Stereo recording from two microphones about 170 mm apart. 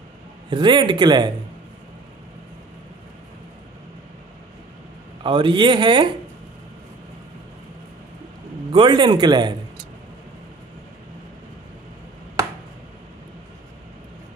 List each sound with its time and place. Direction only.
0.5 s a man's voice: 30° right (ahead or behind)
5.2 s a man's voice: 30° right (ahead or behind)
8.7 s a man's voice: 30° right (ahead or behind)